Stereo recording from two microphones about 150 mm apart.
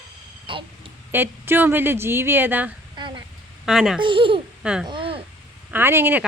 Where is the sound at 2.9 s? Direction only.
30° right (ahead or behind).